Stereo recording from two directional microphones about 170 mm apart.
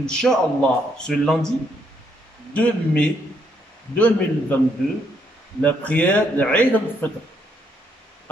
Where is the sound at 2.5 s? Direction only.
5° left (ahead or behind).